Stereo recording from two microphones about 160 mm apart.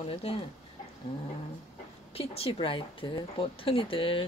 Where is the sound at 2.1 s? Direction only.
40° left (ahead or behind).